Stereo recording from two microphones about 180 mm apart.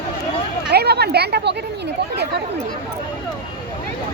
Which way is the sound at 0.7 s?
65° right (ahead or behind).